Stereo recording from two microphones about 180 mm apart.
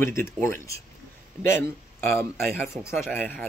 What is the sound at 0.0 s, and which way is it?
Speech, 15° left (ahead or behind).